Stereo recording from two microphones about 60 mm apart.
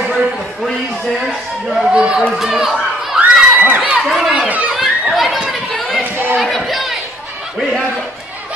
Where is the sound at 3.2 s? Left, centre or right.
Right.